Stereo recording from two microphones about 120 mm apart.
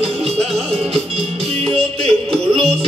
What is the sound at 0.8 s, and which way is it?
Music, 55° right (ahead or behind).